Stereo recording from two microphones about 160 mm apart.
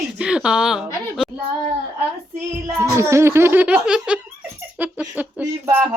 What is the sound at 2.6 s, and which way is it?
Speech, 20° right (ahead or behind).